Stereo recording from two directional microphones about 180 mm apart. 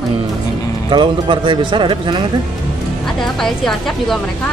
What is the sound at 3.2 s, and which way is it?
A woman's voice, centre (ahead or behind).